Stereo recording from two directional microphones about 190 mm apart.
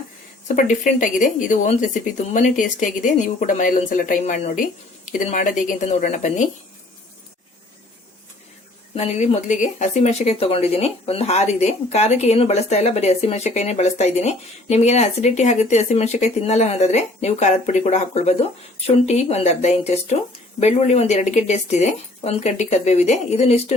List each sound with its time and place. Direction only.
0.4 s a woman's voice: 40° left (ahead or behind)
9.0 s speech: 35° left (ahead or behind)